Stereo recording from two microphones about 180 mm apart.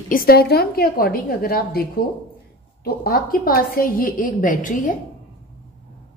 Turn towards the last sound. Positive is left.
turn(degrees=45)  # may be behind; listen again after turning